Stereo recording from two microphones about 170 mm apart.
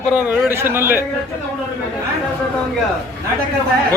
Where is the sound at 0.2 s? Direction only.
10° right (ahead or behind).